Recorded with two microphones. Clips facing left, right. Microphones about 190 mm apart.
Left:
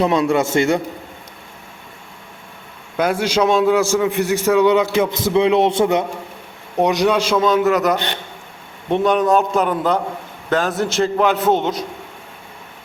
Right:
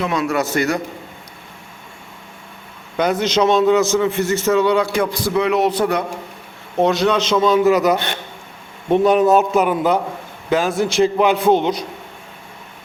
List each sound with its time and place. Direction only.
0.0 s a man's voice: 30° left (ahead or behind)
3.0 s a man's voice: 10° left (ahead or behind)
7.3 s a man's voice: centre (ahead or behind)